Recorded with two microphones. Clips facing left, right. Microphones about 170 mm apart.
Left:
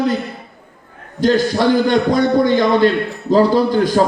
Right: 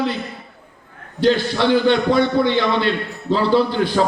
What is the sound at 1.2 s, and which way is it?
A man's voice, 45° left (ahead or behind).